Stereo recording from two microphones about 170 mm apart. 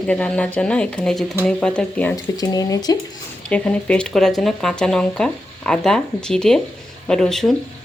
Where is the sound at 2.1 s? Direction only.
20° left (ahead or behind).